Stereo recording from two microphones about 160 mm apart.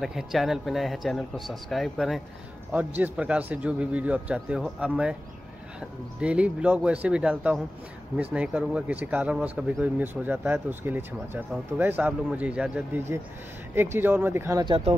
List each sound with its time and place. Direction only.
0.0 s speech: centre (ahead or behind)
14.9 s speech: 40° right (ahead or behind)